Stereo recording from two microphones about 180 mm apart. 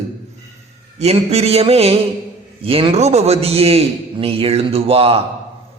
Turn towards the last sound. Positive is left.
turn(degrees=-30)  # may be behind; listen again after turning